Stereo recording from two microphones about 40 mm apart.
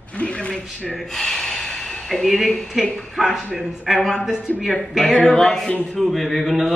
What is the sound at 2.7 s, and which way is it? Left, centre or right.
A man's voice, centre.